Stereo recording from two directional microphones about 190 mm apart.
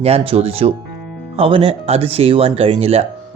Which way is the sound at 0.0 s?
30° right (ahead or behind).